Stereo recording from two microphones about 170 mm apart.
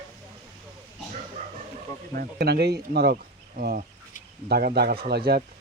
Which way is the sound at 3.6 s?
55° right (ahead or behind).